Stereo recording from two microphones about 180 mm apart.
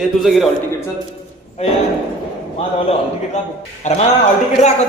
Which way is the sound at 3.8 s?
40° left (ahead or behind).